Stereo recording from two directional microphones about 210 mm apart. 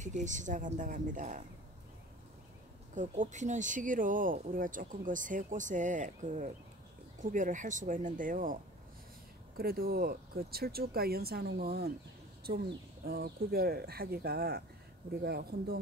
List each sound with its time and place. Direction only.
0.0 s speech: 35° right (ahead or behind)
2.9 s speech: 35° right (ahead or behind)
9.6 s speech: 45° right (ahead or behind)
13.0 s speech: 45° right (ahead or behind)